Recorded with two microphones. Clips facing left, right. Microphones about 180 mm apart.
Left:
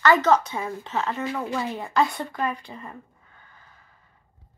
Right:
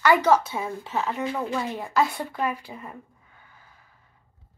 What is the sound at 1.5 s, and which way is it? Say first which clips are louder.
Speech: even; centre (ahead or behind).